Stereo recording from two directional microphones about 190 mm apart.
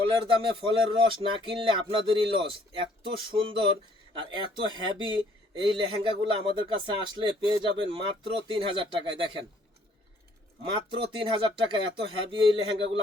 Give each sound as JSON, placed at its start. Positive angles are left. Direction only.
{"t": 0.3, "sound": "speech", "side_deg": -25}
{"t": 10.6, "sound": "speech", "side_deg": -25}